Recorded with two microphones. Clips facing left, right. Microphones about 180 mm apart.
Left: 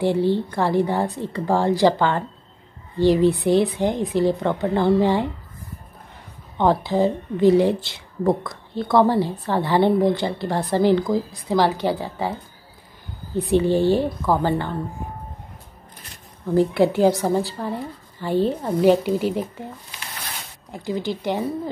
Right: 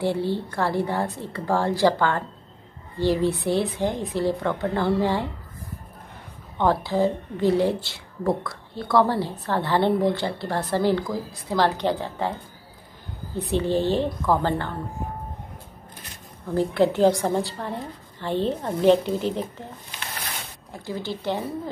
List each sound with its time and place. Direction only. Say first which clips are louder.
0.0 s a woman's voice: left 5 dB; 15° left (ahead or behind)
6.6 s a woman's voice: left 3 dB; 20° left (ahead or behind)
13.5 s a woman's voice: left 5 dB; 15° left (ahead or behind)
16.5 s a woman's voice: left 3 dB; 10° left (ahead or behind)
20.7 s a woman's voice: left 5 dB; 15° left (ahead or behind)